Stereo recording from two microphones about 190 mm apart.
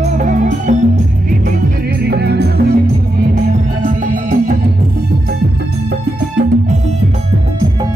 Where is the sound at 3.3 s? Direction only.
45° right (ahead or behind).